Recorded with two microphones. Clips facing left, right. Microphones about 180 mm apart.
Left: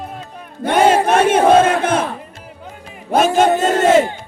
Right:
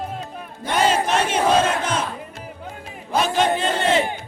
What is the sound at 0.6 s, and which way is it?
Battle cry, 55° left (ahead or behind).